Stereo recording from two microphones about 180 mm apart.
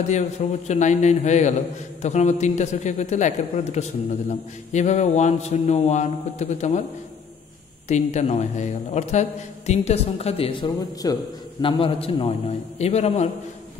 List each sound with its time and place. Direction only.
0.1 s a man's voice: 40° left (ahead or behind)
7.9 s a man's voice: 40° left (ahead or behind)
11.0 s a man's voice: 20° left (ahead or behind)
11.6 s a man's voice: 30° left (ahead or behind)